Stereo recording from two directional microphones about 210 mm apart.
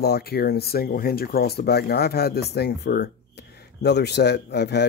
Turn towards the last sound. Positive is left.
turn(degrees=55)  # may be behind; listen again after turning